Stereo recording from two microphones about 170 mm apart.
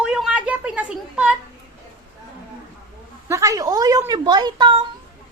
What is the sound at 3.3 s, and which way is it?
A woman's voice, 20° right (ahead or behind).